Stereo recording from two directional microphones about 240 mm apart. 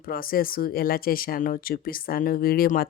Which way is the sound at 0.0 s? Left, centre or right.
Left.